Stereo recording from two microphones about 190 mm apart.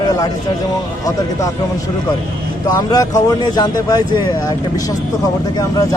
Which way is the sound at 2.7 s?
20° left (ahead or behind).